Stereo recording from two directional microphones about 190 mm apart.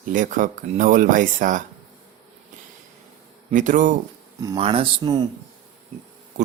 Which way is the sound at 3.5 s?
40° right (ahead or behind).